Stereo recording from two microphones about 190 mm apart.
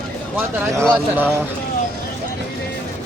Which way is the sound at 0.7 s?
15° right (ahead or behind).